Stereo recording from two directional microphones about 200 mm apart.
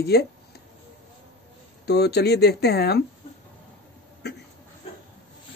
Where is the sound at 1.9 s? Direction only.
55° left (ahead or behind).